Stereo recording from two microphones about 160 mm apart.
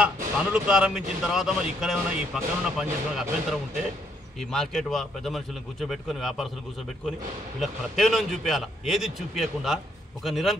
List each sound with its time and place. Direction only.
0.0 s a man's voice: 5° right (ahead or behind)
4.4 s a man's voice: centre (ahead or behind)
7.6 s a man's voice: centre (ahead or behind)